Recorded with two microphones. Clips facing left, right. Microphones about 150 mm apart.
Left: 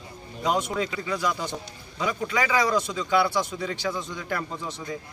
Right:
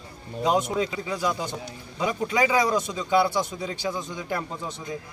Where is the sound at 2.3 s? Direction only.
20° right (ahead or behind).